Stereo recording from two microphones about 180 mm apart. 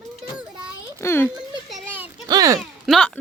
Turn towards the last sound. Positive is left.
turn(degrees=5)  # may be behind; listen again after turning